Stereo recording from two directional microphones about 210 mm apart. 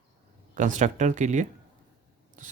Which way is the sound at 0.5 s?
35° right (ahead or behind).